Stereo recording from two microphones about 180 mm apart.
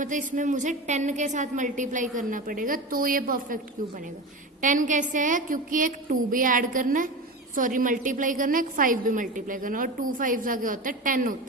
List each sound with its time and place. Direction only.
0.0 s a woman's voice: 45° right (ahead or behind)